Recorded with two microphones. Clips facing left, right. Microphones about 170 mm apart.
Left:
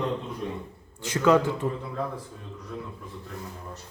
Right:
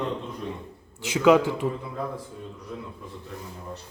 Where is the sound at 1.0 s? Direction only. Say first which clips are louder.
Right 2 dB; 10° right (ahead or behind).